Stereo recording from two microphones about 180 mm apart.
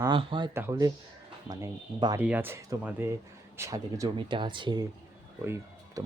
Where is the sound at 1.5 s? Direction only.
20° right (ahead or behind).